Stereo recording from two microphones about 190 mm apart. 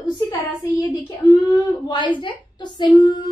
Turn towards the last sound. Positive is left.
turn(degrees=25)  # may be behind; listen again after turning